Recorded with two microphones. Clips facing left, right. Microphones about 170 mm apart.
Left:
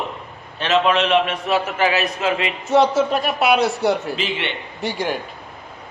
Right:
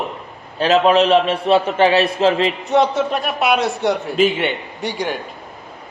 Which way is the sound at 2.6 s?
Centre (ahead or behind).